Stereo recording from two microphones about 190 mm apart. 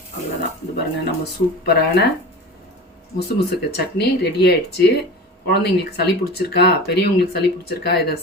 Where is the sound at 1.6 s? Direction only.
60° left (ahead or behind).